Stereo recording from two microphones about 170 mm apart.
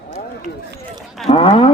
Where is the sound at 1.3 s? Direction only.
35° left (ahead or behind).